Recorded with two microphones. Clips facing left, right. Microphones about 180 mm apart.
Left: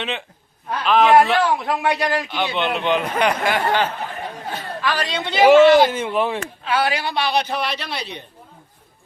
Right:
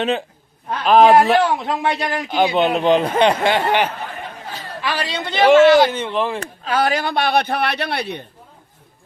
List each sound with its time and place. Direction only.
0.9 s speech: 40° right (ahead or behind)
1.4 s a man's voice: 20° right (ahead or behind)
2.3 s a man's voice: 40° right (ahead or behind); by 6.4 s 5° left (ahead or behind)
6.4 s speech: 40° right (ahead or behind)